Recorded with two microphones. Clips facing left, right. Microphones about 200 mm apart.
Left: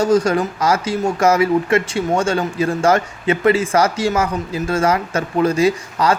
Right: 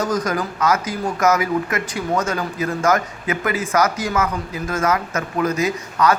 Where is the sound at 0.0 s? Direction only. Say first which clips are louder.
Left 6 dB; 30° left (ahead or behind).